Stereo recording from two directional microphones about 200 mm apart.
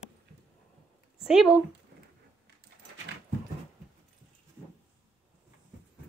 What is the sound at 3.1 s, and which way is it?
Dog, 60° right (ahead or behind).